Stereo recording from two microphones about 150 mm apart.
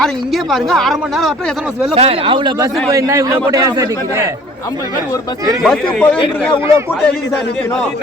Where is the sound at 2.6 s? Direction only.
20° right (ahead or behind).